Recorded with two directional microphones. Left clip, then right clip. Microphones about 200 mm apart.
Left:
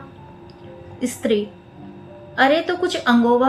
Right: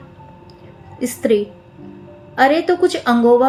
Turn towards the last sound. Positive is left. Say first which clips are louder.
# right 4 dB
turn(degrees=-45)  # may be behind; listen again after turning